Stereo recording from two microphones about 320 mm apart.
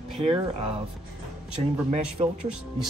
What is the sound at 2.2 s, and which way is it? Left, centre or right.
Speech, centre.